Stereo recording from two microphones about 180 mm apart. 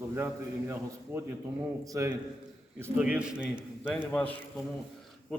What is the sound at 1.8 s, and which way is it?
Speech, 20° right (ahead or behind).